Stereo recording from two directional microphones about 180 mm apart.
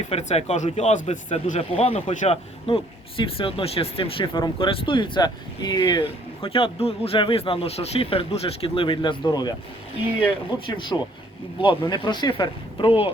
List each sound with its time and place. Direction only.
0.1 s speech: 35° left (ahead or behind)
10.7 s speech: 25° left (ahead or behind)